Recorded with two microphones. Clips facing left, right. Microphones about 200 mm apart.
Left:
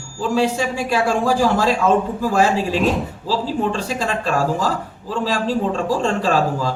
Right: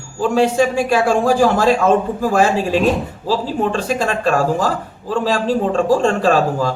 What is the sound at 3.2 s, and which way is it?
Speech, 55° right (ahead or behind).